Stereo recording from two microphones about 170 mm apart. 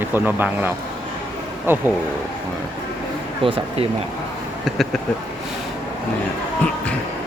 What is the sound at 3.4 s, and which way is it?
Speech, 30° right (ahead or behind).